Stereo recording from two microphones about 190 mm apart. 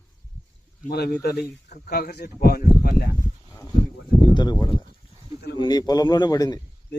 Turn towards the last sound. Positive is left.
turn(degrees=20)  # may be behind; listen again after turning